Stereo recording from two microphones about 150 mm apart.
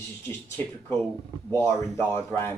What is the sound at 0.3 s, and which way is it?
Speech, 10° left (ahead or behind).